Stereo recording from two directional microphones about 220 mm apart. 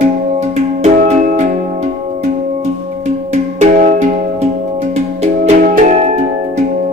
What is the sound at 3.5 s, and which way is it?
Music, 30° right (ahead or behind).